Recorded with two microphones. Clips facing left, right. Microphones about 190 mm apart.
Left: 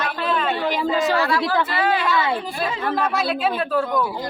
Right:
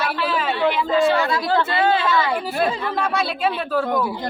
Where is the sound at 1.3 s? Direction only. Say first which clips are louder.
Right 1 dB; 25° right (ahead or behind).